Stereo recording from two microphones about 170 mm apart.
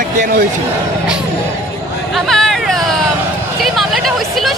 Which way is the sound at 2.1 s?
Centre (ahead or behind).